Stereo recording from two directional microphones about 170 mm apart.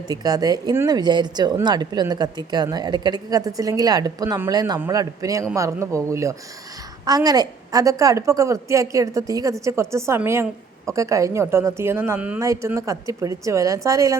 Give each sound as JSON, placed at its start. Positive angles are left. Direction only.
{"t": 0.1, "sound": "speech", "side_deg": -20}